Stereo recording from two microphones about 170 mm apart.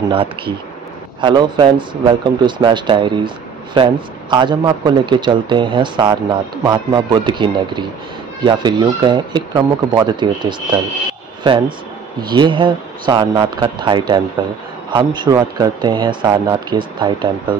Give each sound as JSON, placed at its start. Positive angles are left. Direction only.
{"t": 0.1, "sound": "a man's voice", "side_deg": -30}
{"t": 12.2, "sound": "a man's voice", "side_deg": -25}